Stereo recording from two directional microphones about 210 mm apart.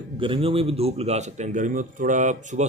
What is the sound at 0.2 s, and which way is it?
A man's voice, 25° right (ahead or behind).